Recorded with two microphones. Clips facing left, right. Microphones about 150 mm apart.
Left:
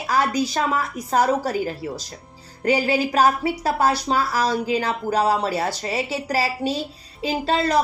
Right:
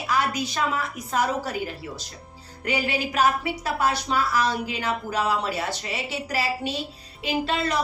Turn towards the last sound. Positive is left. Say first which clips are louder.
# left 4 dB
turn(degrees=35)  # may be behind; listen again after turning